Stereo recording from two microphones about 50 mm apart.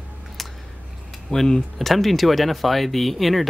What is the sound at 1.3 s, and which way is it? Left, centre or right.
Speech, centre.